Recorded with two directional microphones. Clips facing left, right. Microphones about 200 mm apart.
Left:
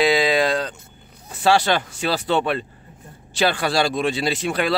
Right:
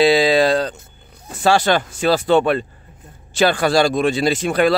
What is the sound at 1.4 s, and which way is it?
Speech, 45° right (ahead or behind).